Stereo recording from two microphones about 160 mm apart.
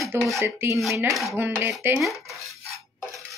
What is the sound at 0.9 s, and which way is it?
A woman's voice, 20° right (ahead or behind).